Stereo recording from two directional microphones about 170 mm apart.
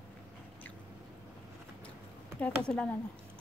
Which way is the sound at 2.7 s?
5° left (ahead or behind).